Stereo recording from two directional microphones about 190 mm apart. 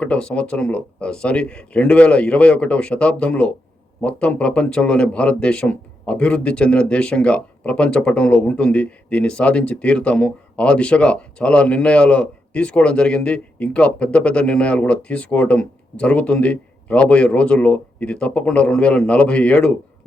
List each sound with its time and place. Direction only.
0.0 s speech: 5° left (ahead or behind)